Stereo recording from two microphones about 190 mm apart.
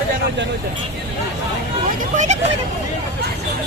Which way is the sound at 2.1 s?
40° right (ahead or behind).